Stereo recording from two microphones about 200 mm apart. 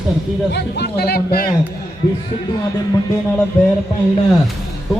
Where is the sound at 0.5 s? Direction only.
55° left (ahead or behind).